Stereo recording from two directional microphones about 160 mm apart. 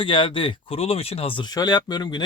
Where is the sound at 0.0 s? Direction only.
30° left (ahead or behind).